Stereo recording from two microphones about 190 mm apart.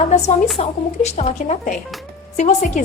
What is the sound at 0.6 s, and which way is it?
A woman's voice, 35° left (ahead or behind).